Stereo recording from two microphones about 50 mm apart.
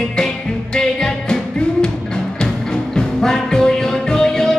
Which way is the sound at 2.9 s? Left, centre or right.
Centre.